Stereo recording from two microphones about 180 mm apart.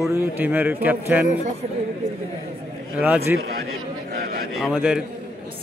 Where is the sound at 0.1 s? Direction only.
15° right (ahead or behind).